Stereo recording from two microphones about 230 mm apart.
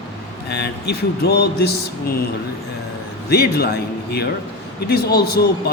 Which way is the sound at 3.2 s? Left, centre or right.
Left.